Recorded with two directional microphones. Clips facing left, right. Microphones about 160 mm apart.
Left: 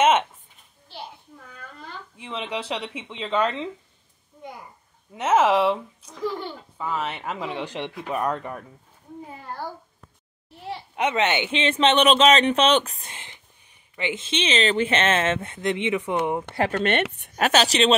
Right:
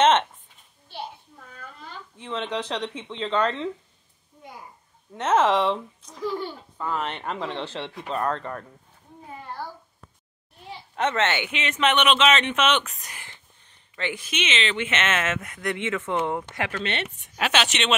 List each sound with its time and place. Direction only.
0.0 s a sound: 10° left (ahead or behind)
2.1 s speech: 10° left (ahead or behind)
5.1 s speech: 10° left (ahead or behind)
11.0 s speech: 15° left (ahead or behind)
16.7 s a woman's voice: 50° left (ahead or behind); by 17.9 s 35° left (ahead or behind)